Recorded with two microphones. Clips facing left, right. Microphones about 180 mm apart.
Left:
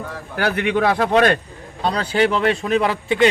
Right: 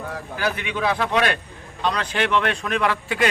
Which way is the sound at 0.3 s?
60° left (ahead or behind).